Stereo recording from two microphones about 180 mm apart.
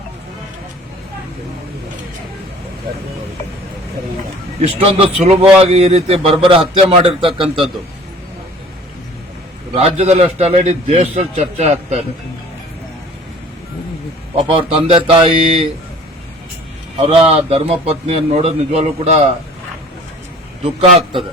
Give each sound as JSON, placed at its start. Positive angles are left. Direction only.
{"t": 4.6, "sound": "a man's voice", "side_deg": -35}
{"t": 9.7, "sound": "a man's voice", "side_deg": -35}
{"t": 14.4, "sound": "a man's voice", "side_deg": -30}
{"t": 17.0, "sound": "a man's voice", "side_deg": -35}